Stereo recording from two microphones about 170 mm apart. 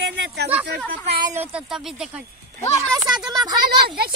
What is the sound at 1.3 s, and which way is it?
Speech, 5° right (ahead or behind).